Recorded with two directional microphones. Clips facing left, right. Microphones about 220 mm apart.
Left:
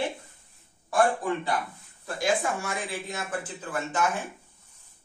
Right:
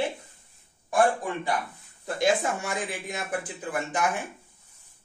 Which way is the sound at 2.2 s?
15° right (ahead or behind).